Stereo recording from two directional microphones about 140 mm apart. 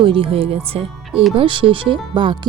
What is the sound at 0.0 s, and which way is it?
Speech, 40° right (ahead or behind).